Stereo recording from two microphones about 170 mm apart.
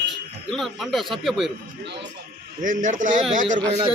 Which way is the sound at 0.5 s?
Centre (ahead or behind).